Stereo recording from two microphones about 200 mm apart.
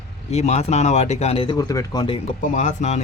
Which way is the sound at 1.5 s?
15° left (ahead or behind).